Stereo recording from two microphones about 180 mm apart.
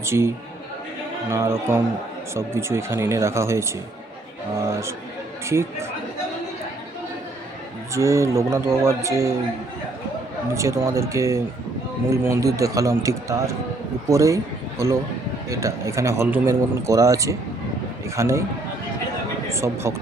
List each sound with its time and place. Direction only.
0.0 s a man's voice: 15° right (ahead or behind)
7.9 s a man's voice: 15° right (ahead or behind)
10.5 s a man's voice: 15° right (ahead or behind)
19.5 s speech: 15° right (ahead or behind)